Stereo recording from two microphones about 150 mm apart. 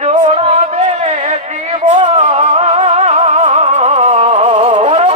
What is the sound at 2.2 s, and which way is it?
Music, 55° right (ahead or behind).